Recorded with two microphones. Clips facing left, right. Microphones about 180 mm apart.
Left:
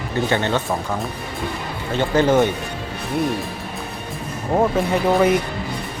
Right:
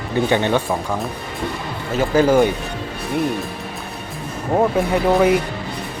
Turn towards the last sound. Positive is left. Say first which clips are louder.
# right 1 dB
turn(degrees=0)  # may be behind; listen again after turning